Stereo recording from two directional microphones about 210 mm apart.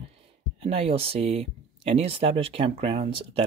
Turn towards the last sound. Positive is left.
turn(degrees=-25)  # may be behind; listen again after turning